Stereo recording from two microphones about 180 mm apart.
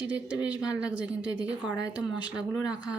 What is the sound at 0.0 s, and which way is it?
Speech, 5° right (ahead or behind).